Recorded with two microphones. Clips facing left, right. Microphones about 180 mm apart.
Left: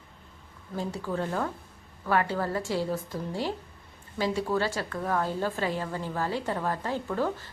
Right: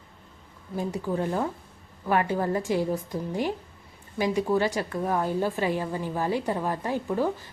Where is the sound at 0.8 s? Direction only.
15° right (ahead or behind).